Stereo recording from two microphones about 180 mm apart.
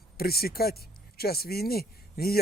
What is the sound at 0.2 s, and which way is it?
Speech, 60° left (ahead or behind).